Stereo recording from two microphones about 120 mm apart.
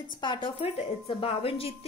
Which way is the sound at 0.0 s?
40° left (ahead or behind).